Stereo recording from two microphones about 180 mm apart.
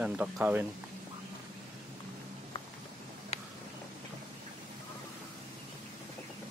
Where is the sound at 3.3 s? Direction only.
35° left (ahead or behind).